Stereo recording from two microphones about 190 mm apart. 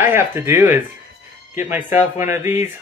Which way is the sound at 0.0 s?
10° right (ahead or behind).